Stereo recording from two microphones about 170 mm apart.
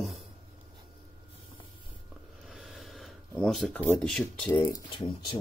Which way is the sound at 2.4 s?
Centre (ahead or behind).